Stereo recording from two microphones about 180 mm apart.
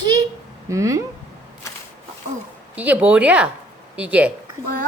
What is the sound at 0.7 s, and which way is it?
Speech, 15° right (ahead or behind).